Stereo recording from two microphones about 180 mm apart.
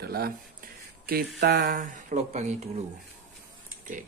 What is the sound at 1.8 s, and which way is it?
Speech, 45° right (ahead or behind).